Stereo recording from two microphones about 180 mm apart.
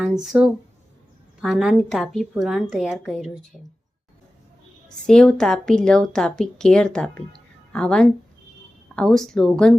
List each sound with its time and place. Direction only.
0.0 s a woman's voice: centre (ahead or behind)
4.9 s a woman's voice: 5° left (ahead or behind)